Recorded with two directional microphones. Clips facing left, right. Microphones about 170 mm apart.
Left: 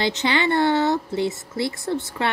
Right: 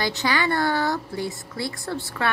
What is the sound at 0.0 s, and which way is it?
Speech, 25° left (ahead or behind).